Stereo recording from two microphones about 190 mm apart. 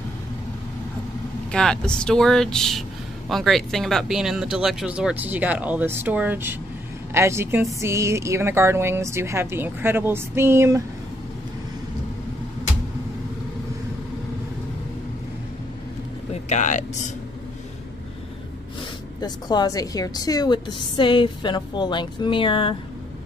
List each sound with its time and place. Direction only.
1.5 s a woman's voice: 5° left (ahead or behind); by 10.8 s 15° right (ahead or behind)
16.4 s speech: 40° left (ahead or behind)
19.2 s a woman's voice: 20° left (ahead or behind)